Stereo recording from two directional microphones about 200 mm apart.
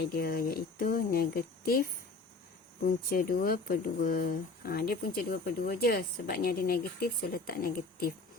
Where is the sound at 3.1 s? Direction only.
50° left (ahead or behind).